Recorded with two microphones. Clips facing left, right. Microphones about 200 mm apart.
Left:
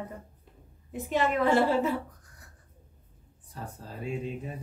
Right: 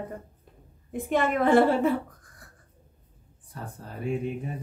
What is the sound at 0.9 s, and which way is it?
Speech, 50° right (ahead or behind).